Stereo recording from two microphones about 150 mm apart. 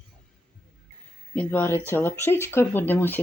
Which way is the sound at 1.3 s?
10° left (ahead or behind).